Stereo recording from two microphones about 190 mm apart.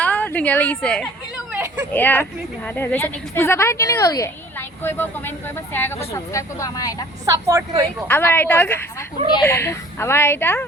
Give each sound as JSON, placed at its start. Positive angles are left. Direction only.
{"t": 0.0, "sound": "a woman's voice", "side_deg": 10}
{"t": 1.5, "sound": "a sound", "side_deg": -10}
{"t": 1.9, "sound": "speech", "side_deg": 10}
{"t": 7.3, "sound": "a woman's voice", "side_deg": -15}
{"t": 8.0, "sound": "speech", "side_deg": 10}